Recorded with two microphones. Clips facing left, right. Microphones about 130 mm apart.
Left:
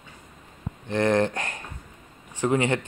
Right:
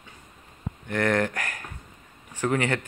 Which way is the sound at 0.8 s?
20° left (ahead or behind).